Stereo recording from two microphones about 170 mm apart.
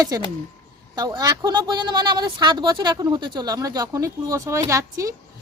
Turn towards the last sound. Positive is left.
turn(degrees=-20)  # may be behind; listen again after turning